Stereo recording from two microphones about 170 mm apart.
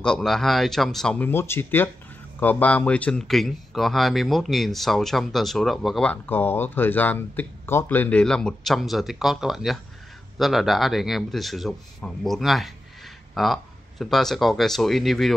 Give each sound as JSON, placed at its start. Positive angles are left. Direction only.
{"t": 0.0, "sound": "speech", "side_deg": 5}